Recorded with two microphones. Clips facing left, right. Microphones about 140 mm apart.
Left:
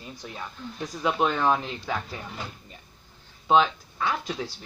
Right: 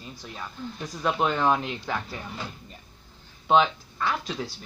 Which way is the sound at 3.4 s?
Centre (ahead or behind).